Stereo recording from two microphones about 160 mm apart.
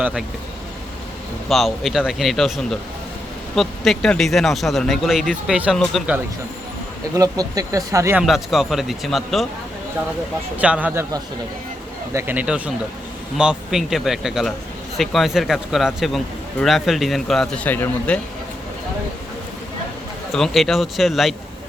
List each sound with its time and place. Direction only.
0.0 s speech: 5° right (ahead or behind)
1.5 s speech: centre (ahead or behind)
7.1 s speech: 20° right (ahead or behind)
8.2 s speech: centre (ahead or behind)
10.6 s speech: 10° right (ahead or behind)
12.1 s speech: 10° right (ahead or behind); by 18.2 s 10° left (ahead or behind)
20.3 s speech: centre (ahead or behind)